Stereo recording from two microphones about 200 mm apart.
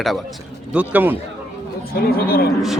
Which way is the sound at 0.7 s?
10° right (ahead or behind).